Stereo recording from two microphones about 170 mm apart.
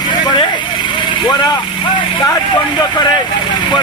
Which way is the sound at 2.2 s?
25° left (ahead or behind).